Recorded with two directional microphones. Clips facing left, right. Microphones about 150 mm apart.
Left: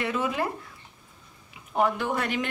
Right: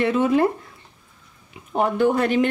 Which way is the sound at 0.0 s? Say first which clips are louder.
Right 10 dB; 30° right (ahead or behind).